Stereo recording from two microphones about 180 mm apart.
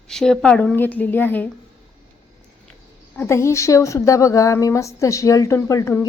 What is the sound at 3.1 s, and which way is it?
Speech, 15° left (ahead or behind).